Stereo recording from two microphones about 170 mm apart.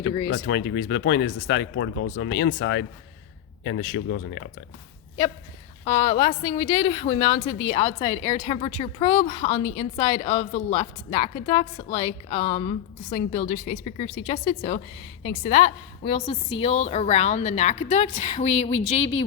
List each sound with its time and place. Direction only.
0.3 s speech: 90° left
5.8 s a woman's voice: 35° left (ahead or behind)